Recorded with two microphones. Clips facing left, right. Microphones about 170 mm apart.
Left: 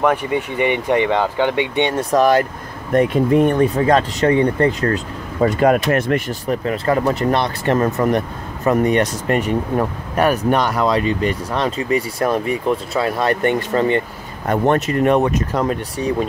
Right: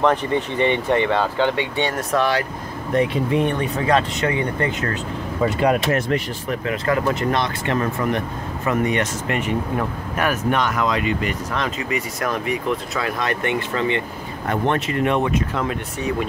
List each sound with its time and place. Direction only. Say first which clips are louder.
0.0 s speech: left 1 dB; 10° left (ahead or behind)
2.0 s speech: left 8 dB; 40° left (ahead or behind)
6.4 s speech: left 4 dB; 35° left (ahead or behind)